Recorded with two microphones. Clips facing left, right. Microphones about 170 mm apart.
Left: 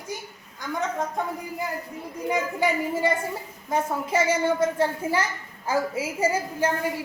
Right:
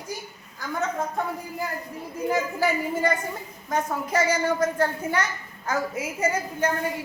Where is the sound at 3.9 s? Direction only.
25° left (ahead or behind).